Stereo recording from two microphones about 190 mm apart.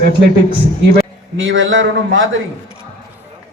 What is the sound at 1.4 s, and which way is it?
Speech, 90° right.